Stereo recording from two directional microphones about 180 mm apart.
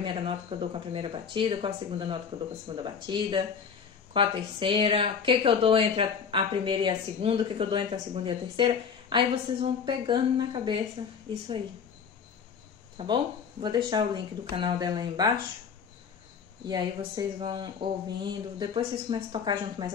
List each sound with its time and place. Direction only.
0.0 s a woman's voice: 30° right (ahead or behind)
12.9 s a woman's voice: 25° right (ahead or behind)
16.6 s a woman's voice: 20° right (ahead or behind)